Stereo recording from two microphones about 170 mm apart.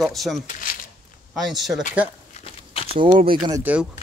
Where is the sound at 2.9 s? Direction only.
30° right (ahead or behind).